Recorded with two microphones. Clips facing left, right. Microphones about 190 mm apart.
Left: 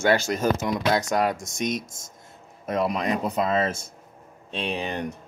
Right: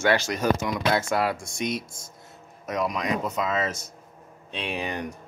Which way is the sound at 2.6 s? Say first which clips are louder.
Left 2 dB; 30° left (ahead or behind).